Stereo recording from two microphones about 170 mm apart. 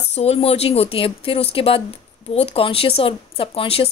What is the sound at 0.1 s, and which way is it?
Speech, 35° left (ahead or behind).